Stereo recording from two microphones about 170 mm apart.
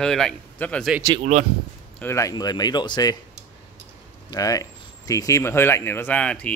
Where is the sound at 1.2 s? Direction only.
45° right (ahead or behind).